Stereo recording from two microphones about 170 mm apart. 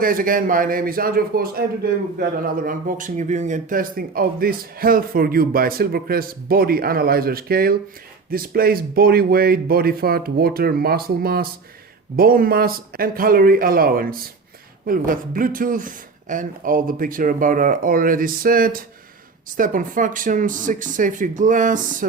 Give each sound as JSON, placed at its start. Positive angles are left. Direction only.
{"t": 0.0, "sound": "a man's voice", "side_deg": -55}